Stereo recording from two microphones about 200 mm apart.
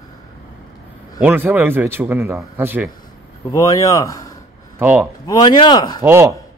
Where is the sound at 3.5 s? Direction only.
15° left (ahead or behind).